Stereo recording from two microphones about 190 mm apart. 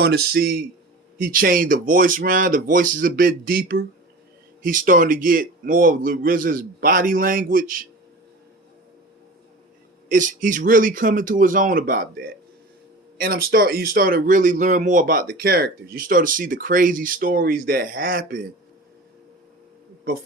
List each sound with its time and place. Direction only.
0.0 s a man's voice: 55° right (ahead or behind)
10.0 s speech: 45° right (ahead or behind)